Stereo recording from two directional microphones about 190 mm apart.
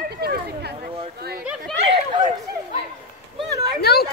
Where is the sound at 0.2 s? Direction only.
55° right (ahead or behind).